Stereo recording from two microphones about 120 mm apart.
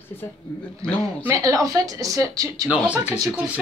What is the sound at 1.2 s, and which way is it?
Speech, 25° right (ahead or behind).